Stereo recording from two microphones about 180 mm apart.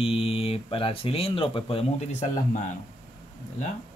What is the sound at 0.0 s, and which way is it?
Speech, 30° left (ahead or behind).